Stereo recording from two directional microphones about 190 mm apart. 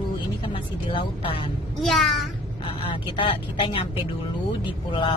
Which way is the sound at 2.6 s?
25° left (ahead or behind).